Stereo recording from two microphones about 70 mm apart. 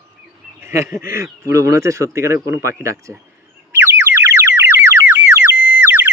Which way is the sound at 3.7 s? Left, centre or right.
Right.